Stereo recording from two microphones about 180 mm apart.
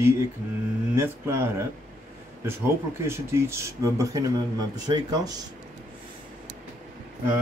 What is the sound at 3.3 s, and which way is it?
Speech, 15° right (ahead or behind).